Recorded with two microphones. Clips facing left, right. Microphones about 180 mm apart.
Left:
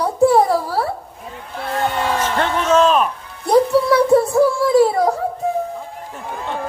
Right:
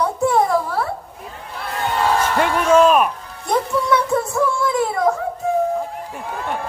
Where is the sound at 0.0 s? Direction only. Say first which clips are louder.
Left 4 dB; 35° left (ahead or behind).